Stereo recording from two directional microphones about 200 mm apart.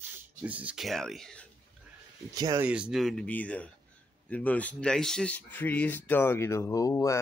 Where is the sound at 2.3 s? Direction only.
20° right (ahead or behind).